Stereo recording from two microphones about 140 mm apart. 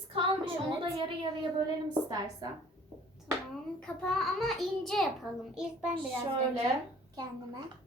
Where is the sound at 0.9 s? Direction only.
35° right (ahead or behind).